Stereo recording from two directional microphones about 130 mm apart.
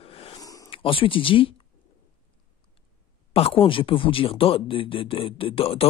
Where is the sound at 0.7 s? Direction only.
45° left (ahead or behind).